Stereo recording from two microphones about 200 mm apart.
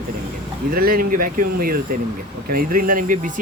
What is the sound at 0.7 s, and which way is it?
Speech, 45° right (ahead or behind).